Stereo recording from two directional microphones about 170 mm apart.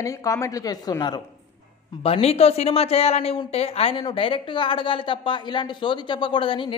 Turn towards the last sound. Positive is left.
turn(degrees=30)  # may be behind; listen again after turning